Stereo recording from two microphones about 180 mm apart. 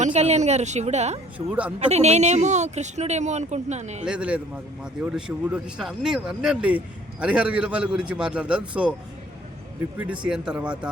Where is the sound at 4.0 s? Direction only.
5° right (ahead or behind).